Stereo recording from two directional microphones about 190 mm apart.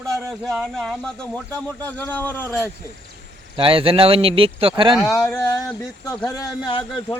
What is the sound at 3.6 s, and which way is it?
Speech, 30° right (ahead or behind).